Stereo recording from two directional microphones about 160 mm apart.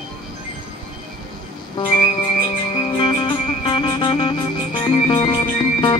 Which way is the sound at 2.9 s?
35° left (ahead or behind).